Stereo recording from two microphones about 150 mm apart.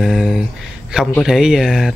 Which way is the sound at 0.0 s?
5° right (ahead or behind).